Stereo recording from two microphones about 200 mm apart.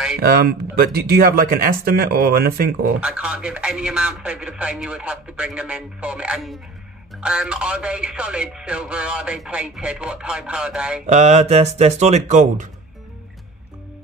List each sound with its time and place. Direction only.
0.3 s speech: 50° right (ahead or behind)
3.0 s speech: 5° right (ahead or behind)
11.1 s speech: 35° right (ahead or behind)